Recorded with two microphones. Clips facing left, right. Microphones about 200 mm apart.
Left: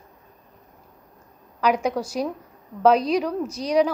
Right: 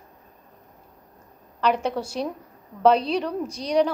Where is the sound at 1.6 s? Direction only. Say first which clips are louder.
Left 1 dB; 10° left (ahead or behind).